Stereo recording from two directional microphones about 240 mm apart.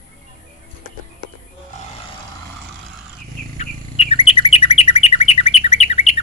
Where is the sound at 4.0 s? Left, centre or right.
Left.